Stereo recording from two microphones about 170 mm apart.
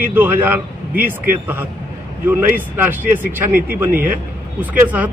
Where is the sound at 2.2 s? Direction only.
10° right (ahead or behind).